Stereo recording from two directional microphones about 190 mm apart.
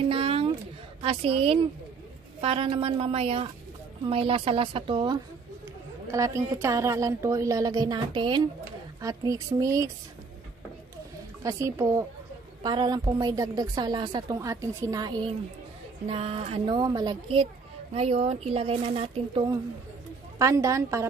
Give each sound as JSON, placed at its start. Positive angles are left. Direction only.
{"t": 0.1, "sound": "a sound", "side_deg": -30}
{"t": 1.0, "sound": "a woman's voice", "side_deg": -30}
{"t": 11.4, "sound": "a woman's voice", "side_deg": -15}
{"t": 20.3, "sound": "a woman's voice", "side_deg": -15}